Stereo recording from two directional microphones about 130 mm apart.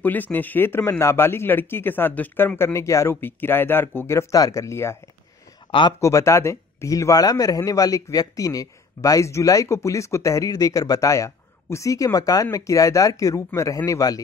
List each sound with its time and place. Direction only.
0.0 s a man's voice: 15° left (ahead or behind)
5.7 s speech: 40° left (ahead or behind)
5.9 s speech: 25° left (ahead or behind)